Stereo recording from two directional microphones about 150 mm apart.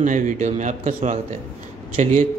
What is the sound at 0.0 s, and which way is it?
Speech, 55° right (ahead or behind).